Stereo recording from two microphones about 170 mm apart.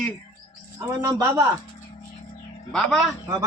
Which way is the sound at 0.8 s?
20° right (ahead or behind).